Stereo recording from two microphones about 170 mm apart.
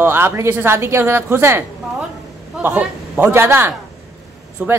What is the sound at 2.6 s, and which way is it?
Speech, 10° right (ahead or behind).